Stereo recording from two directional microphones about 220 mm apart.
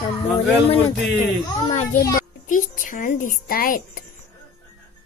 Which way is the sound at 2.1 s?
35° left (ahead or behind).